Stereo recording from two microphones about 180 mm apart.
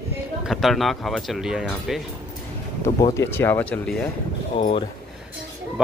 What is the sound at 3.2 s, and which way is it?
Speech, 15° left (ahead or behind).